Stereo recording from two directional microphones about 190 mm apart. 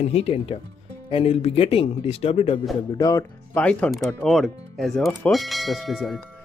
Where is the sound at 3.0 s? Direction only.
20° left (ahead or behind).